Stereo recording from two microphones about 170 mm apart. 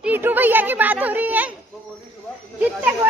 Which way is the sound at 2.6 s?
10° right (ahead or behind).